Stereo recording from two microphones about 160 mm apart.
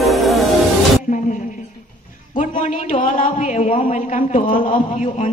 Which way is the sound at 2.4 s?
55° left (ahead or behind).